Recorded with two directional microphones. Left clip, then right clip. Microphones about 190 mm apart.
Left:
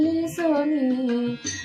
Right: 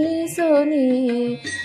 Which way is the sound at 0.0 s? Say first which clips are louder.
Right 2 dB; 45° right (ahead or behind).